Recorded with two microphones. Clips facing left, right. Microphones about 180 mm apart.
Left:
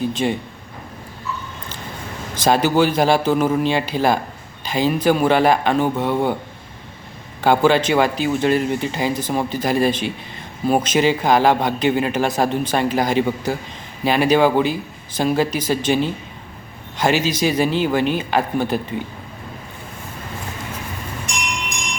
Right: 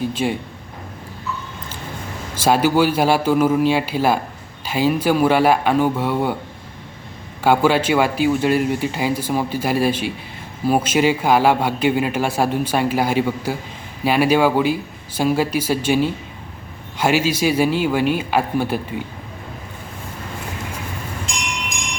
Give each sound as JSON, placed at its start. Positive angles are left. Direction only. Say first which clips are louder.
{"t": 0.1, "sound": "speech", "louder": "left 1 dB", "side_deg": -10}
{"t": 2.3, "sound": "speech", "louder": "even", "side_deg": -10}
{"t": 7.4, "sound": "speech", "louder": "even", "side_deg": -10}